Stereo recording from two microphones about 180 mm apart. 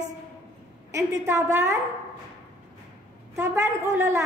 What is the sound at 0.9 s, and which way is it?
Speech, 15° right (ahead or behind).